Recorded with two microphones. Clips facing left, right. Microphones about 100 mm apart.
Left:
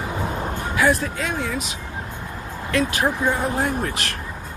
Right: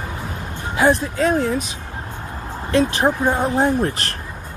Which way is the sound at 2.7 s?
30° right (ahead or behind).